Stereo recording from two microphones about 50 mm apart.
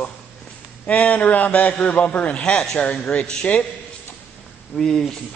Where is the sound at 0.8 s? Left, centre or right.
Left.